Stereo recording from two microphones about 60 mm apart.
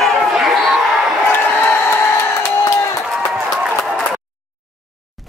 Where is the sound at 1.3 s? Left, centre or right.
Left.